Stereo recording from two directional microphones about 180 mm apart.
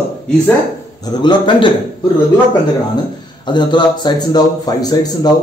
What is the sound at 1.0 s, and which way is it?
Speech, 25° left (ahead or behind).